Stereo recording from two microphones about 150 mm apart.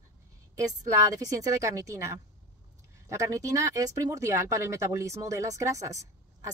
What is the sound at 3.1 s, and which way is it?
A woman's voice, 20° right (ahead or behind).